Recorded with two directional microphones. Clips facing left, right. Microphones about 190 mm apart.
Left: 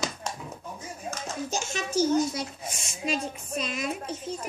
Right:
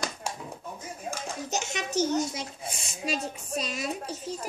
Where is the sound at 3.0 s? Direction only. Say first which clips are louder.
Left 2 dB; 40° right (ahead or behind).